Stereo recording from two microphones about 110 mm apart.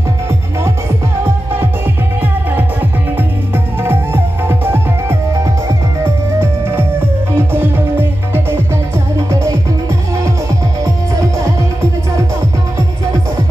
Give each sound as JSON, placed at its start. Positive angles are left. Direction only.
{"t": 2.5, "sound": "music", "side_deg": -20}
{"t": 9.3, "sound": "music", "side_deg": -25}